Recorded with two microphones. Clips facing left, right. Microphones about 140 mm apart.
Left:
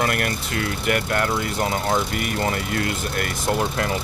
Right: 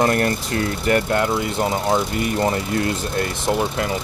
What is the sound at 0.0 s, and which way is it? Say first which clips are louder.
Speech: right 5 dB; 35° right (ahead or behind).